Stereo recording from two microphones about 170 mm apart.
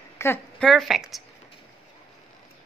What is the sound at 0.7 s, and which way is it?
Speech, centre (ahead or behind).